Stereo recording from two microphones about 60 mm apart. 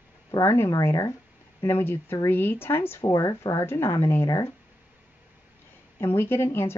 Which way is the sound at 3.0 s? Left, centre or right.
Left.